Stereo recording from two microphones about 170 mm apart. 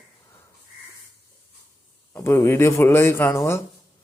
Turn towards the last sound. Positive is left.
turn(degrees=15)  # may be behind; listen again after turning